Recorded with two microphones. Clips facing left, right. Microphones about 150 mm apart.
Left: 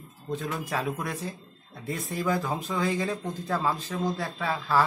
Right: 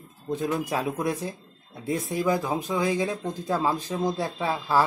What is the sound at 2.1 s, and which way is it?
Speech, 15° right (ahead or behind).